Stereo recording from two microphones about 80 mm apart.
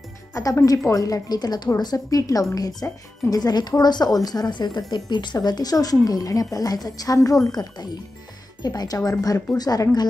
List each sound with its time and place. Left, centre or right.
0.3 s a woman's voice: left